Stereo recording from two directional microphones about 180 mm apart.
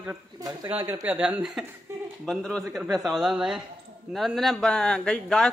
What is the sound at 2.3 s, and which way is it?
Speech, centre (ahead or behind).